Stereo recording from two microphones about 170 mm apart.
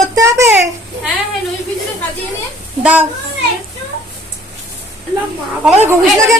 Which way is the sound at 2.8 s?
10° right (ahead or behind).